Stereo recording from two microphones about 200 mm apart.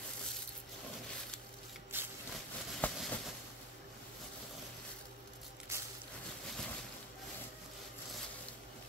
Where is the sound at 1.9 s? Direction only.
10° right (ahead or behind).